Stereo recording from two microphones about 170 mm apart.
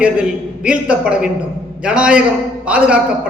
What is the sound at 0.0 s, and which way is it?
A man's voice, 5° right (ahead or behind).